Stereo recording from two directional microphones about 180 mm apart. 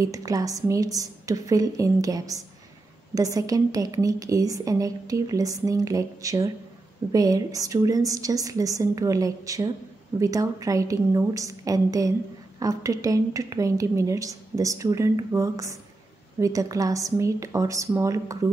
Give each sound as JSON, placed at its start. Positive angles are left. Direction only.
{"t": 0.0, "sound": "a woman's voice", "side_deg": -20}